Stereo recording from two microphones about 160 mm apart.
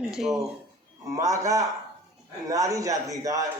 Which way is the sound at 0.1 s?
5° right (ahead or behind).